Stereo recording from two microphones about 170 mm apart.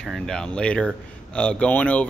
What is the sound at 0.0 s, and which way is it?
Speech, centre (ahead or behind).